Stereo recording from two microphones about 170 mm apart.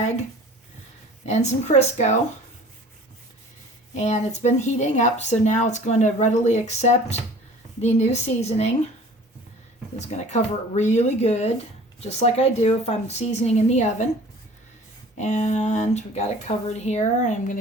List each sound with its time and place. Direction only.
1.2 s a woman's voice: 40° left (ahead or behind)
3.9 s a woman's voice: 40° left (ahead or behind)
10.1 s a woman's voice: 45° left (ahead or behind)
15.2 s speech: 45° left (ahead or behind)